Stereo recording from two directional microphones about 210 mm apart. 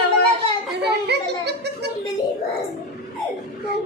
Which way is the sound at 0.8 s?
50° right (ahead or behind).